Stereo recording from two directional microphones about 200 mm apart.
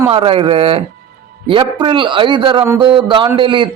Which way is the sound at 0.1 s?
25° right (ahead or behind).